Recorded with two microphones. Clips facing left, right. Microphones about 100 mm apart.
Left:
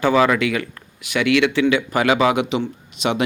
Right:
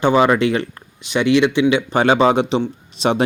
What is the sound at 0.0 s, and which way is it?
Speech, 25° right (ahead or behind).